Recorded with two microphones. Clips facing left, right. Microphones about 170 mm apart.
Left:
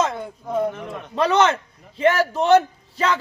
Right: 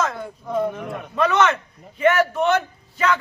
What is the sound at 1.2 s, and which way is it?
A man's voice, 35° left (ahead or behind).